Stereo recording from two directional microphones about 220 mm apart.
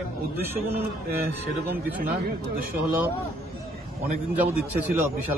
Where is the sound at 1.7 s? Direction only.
45° right (ahead or behind).